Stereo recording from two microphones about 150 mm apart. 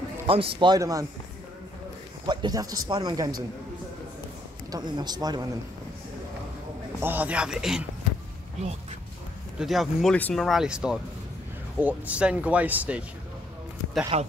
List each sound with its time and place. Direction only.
0.3 s speech: 35° right (ahead or behind)
2.2 s speech: 25° right (ahead or behind)
4.6 s speech: 25° right (ahead or behind)
7.0 s speech: 10° right (ahead or behind)
9.6 s speech: centre (ahead or behind)
14.1 s a man's voice: 45° right (ahead or behind)